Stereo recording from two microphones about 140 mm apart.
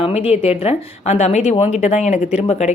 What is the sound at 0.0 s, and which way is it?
Speech, 45° left (ahead or behind).